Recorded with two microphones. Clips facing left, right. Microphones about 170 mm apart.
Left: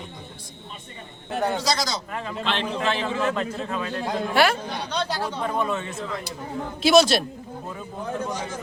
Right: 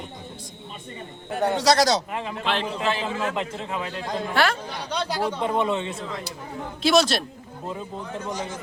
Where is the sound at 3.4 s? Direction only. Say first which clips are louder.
Left 1 dB; 20° right (ahead or behind).